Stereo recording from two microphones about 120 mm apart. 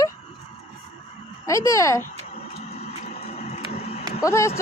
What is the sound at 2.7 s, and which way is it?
Vehicle, 60° left (ahead or behind).